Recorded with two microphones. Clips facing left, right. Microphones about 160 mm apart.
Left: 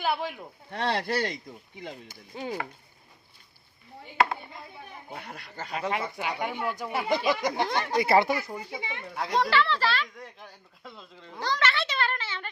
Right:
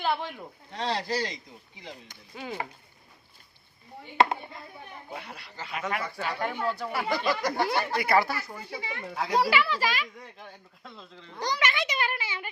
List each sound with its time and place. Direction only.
0.0 s speech: 5° left (ahead or behind)
0.7 s speech: 60° left (ahead or behind)
2.3 s speech: 30° left (ahead or behind)
5.1 s speech: 45° left (ahead or behind)
5.7 s speech: 30° left (ahead or behind)
9.1 s a child's voice: 5° right (ahead or behind)
10.2 s speech: centre (ahead or behind)
11.3 s a child's voice: 15° right (ahead or behind)